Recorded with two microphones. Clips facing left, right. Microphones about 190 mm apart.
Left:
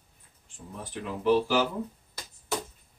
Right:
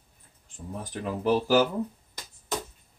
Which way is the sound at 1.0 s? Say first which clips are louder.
Left 1 dB; 40° right (ahead or behind).